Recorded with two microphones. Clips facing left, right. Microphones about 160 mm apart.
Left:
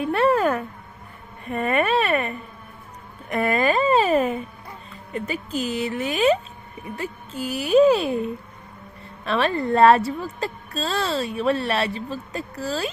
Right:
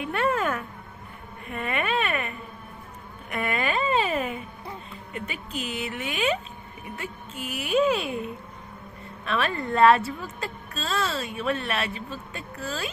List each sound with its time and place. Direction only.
0.0 s a woman's voice: 35° left (ahead or behind)
9.2 s a woman's voice: 30° left (ahead or behind)